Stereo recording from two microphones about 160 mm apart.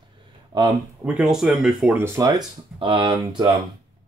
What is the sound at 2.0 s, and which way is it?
Speech, 20° right (ahead or behind).